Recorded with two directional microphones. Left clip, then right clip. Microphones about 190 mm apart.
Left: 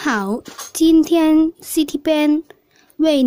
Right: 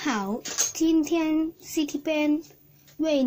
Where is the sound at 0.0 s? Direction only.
25° left (ahead or behind).